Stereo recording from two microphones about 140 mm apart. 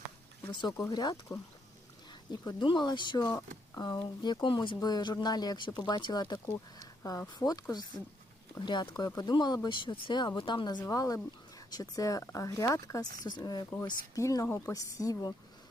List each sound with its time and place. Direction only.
0.9 s speech: 30° left (ahead or behind)
2.4 s speech: 30° left (ahead or behind)